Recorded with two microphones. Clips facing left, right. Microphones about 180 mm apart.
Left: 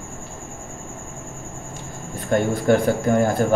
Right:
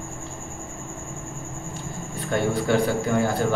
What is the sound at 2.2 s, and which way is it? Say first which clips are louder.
A man's voice: left 3 dB; 45° left (ahead or behind).